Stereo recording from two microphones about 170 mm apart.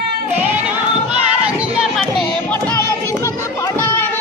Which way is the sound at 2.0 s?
5° left (ahead or behind).